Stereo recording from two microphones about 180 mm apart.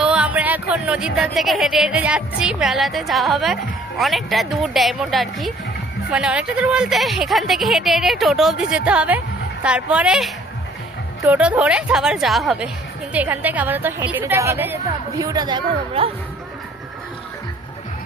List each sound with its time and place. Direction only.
0.0 s a woman's voice: 5° right (ahead or behind); by 16.0 s 30° right (ahead or behind)